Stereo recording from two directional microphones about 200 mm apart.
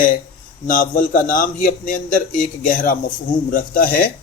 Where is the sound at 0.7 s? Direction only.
45° left (ahead or behind).